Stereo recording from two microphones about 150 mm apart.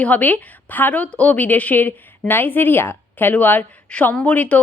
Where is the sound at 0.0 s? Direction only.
10° left (ahead or behind).